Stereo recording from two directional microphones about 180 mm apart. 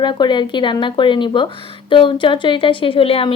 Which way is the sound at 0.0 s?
25° left (ahead or behind).